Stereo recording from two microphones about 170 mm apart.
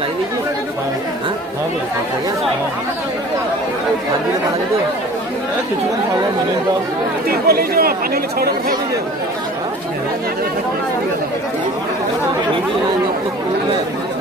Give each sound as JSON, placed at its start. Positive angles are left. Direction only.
{"t": 7.2, "sound": "speech", "side_deg": -65}